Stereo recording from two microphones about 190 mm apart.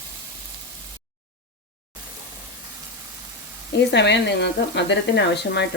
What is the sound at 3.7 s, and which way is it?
Speech, 65° left (ahead or behind).